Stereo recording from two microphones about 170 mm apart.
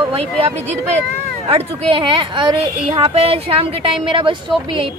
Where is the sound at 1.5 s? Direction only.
35° right (ahead or behind).